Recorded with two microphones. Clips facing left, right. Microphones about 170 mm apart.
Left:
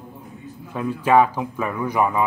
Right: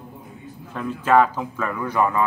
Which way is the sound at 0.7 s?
10° left (ahead or behind).